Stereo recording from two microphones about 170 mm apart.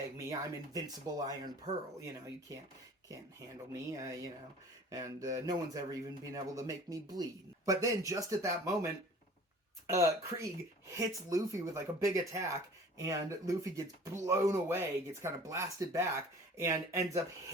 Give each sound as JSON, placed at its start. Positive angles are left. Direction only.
{"t": 0.3, "sound": "speech", "side_deg": -20}
{"t": 3.7, "sound": "speech", "side_deg": -20}